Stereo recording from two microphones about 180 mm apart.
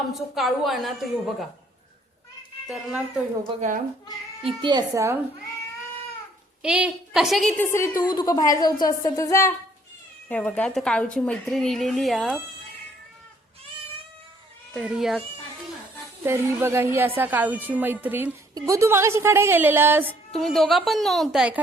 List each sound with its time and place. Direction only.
0.1 s a woman's voice: centre (ahead or behind)
3.6 s speech: 45° right (ahead or behind)
4.4 s speech: 25° right (ahead or behind)
6.6 s a woman's voice: 5° right (ahead or behind)
14.7 s a woman's voice: centre (ahead or behind)
16.2 s a woman's voice: 15° right (ahead or behind)
20.3 s a woman's voice: centre (ahead or behind)